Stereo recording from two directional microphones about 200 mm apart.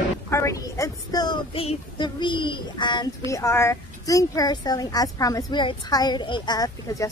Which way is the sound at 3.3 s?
15° left (ahead or behind).